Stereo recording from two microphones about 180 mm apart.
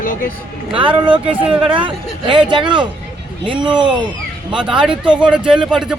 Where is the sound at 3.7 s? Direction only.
25° right (ahead or behind).